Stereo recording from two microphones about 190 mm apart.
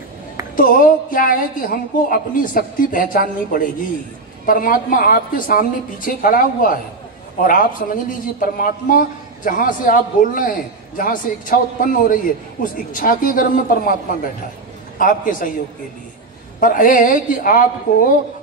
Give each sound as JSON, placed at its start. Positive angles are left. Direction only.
{"t": 0.6, "sound": "a man's voice", "side_deg": 45}
{"t": 16.5, "sound": "a man's voice", "side_deg": 45}